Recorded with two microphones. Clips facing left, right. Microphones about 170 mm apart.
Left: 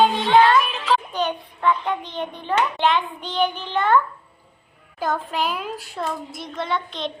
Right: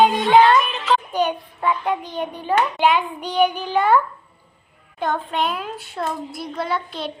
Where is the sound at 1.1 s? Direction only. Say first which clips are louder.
Right 3 dB; 10° right (ahead or behind).